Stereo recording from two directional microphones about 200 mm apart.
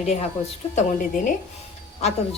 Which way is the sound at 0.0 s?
35° left (ahead or behind).